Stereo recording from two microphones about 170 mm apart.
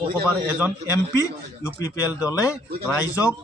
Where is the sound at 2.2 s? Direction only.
20° left (ahead or behind).